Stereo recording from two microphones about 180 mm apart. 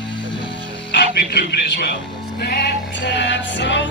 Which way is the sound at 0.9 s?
70° left (ahead or behind).